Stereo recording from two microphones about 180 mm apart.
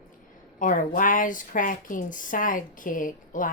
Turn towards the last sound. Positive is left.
turn(degrees=45)  # may be behind; listen again after turning